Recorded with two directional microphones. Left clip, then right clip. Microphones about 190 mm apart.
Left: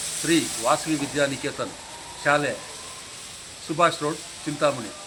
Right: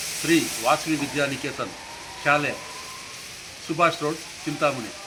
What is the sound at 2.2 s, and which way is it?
Speech, 10° left (ahead or behind).